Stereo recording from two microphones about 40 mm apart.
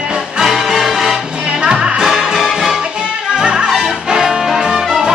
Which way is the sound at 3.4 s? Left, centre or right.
Right.